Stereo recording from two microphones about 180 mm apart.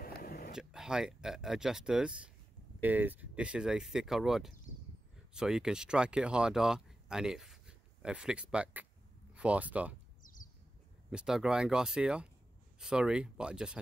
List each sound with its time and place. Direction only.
0.0 s a sound: 55° left (ahead or behind)
0.6 s speech: 5° right (ahead or behind)
11.1 s speech: 5° right (ahead or behind)